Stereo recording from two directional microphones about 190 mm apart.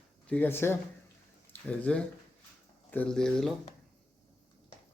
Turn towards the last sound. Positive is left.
turn(degrees=5)  # may be behind; listen again after turning